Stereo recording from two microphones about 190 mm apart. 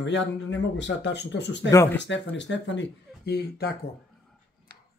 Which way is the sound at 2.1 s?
70° left (ahead or behind).